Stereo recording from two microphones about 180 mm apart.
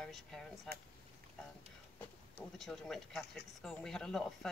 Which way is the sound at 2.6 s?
Centre (ahead or behind).